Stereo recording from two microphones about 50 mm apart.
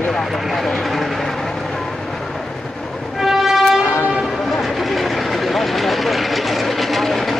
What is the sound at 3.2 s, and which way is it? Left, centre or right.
Train, centre.